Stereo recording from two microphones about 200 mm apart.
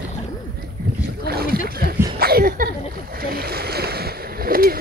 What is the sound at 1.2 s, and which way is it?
Boat, 50° right (ahead or behind).